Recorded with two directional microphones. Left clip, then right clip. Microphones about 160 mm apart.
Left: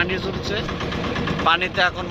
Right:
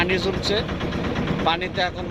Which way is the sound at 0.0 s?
25° right (ahead or behind).